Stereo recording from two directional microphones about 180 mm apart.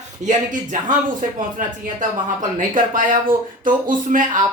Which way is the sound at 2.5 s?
50° right (ahead or behind).